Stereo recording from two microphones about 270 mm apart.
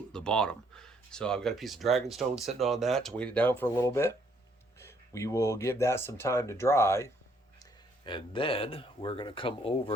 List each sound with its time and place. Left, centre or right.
0.1 s speech: centre